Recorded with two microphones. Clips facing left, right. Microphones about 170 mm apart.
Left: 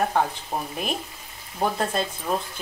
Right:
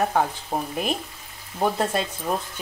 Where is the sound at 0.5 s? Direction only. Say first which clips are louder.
Right 3 dB; 35° right (ahead or behind).